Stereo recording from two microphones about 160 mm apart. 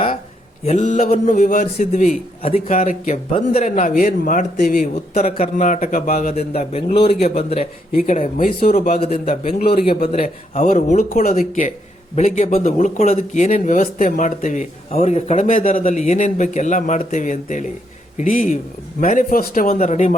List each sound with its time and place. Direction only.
0.6 s speech: 45° left (ahead or behind)
6.3 s speech: 40° left (ahead or behind)
7.6 s speech: 55° left (ahead or behind)
15.8 s speech: 45° left (ahead or behind)